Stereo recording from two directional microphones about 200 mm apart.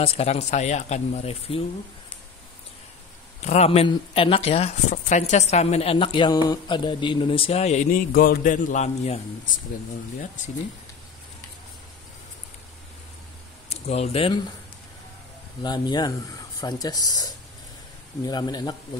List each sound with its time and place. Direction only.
0.0 s speech: 30° left (ahead or behind)
3.4 s speech: 35° left (ahead or behind)
13.7 s speech: 30° left (ahead or behind)
15.6 s speech: 20° left (ahead or behind)